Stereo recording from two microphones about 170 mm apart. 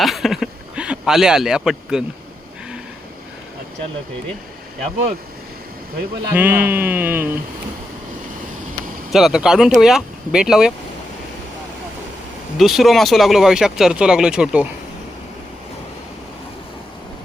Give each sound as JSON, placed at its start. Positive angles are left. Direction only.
{"t": 0.0, "sound": "a sound", "side_deg": 0}
{"t": 6.3, "sound": "speech", "side_deg": -10}
{"t": 9.1, "sound": "speech", "side_deg": 0}
{"t": 12.5, "sound": "speech", "side_deg": 0}